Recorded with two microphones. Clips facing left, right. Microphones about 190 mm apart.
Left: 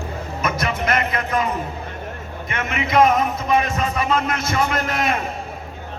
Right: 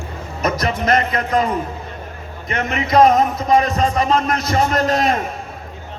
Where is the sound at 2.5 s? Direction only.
35° right (ahead or behind).